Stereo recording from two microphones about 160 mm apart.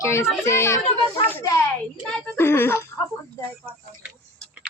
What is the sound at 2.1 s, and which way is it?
Speech, centre (ahead or behind).